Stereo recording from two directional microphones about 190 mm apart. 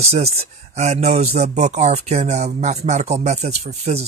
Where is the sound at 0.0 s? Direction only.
35° right (ahead or behind).